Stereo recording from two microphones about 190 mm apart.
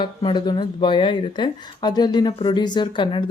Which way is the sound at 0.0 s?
25° left (ahead or behind).